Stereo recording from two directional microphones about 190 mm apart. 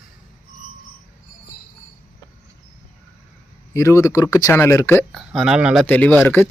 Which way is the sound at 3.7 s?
15° left (ahead or behind).